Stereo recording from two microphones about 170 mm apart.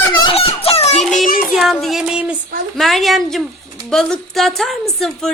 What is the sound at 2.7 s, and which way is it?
Speech, centre (ahead or behind).